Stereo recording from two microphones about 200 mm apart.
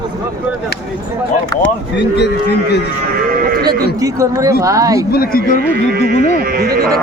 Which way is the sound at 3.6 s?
15° right (ahead or behind).